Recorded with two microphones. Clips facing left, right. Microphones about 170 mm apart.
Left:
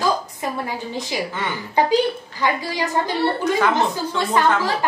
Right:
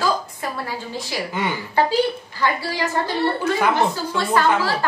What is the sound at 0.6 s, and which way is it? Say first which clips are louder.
A woman's voice: left 2 dB; 20° left (ahead or behind).